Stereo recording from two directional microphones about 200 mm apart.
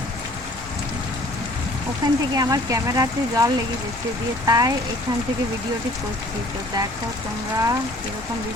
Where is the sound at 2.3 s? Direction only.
20° right (ahead or behind).